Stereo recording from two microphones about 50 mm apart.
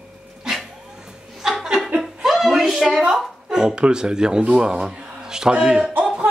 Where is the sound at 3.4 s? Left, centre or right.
Centre.